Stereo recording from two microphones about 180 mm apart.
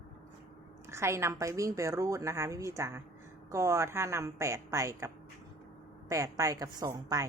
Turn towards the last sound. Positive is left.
turn(degrees=-20)  # may be behind; listen again after turning